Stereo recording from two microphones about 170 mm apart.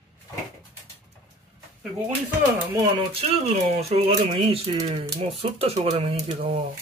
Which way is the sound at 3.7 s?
35° right (ahead or behind).